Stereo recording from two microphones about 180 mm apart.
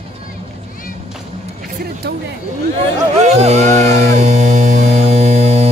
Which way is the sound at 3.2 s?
35° right (ahead or behind).